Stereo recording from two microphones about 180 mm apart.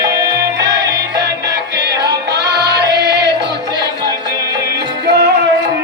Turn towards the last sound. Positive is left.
turn(degrees=-65)  # may be behind; listen again after turning